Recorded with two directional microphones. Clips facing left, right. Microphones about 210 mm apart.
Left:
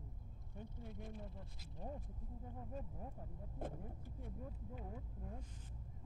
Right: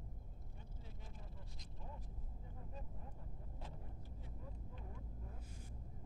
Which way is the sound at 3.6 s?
50° left (ahead or behind).